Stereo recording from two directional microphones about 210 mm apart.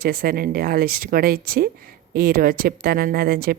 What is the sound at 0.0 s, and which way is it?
Speech, 45° right (ahead or behind).